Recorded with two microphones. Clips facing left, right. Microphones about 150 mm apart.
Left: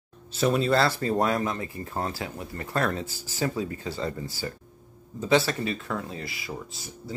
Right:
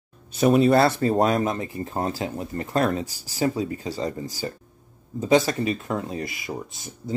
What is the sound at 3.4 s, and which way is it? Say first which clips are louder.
Speech: right 4 dB; 25° right (ahead or behind).